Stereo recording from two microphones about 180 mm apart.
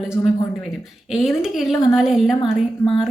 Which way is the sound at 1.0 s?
Centre (ahead or behind).